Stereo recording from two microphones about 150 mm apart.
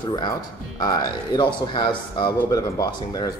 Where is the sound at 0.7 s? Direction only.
25° left (ahead or behind).